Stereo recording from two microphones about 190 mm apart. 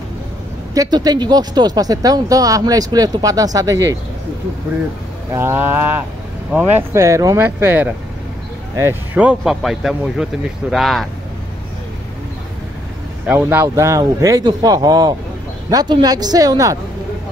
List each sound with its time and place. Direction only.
0.7 s speech: 20° right (ahead or behind)
5.3 s speech: 10° right (ahead or behind)
13.3 s speech: 10° right (ahead or behind)